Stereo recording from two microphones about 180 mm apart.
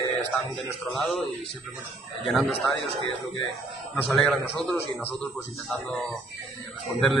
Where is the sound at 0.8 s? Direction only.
Centre (ahead or behind).